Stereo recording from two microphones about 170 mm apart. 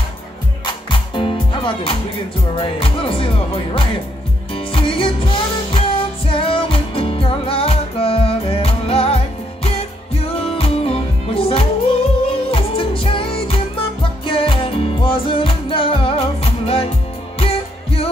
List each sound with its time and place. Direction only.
0.7 s music: 30° left (ahead or behind)
2.6 s speech: 30° left (ahead or behind)
4.6 s music: 30° left (ahead or behind)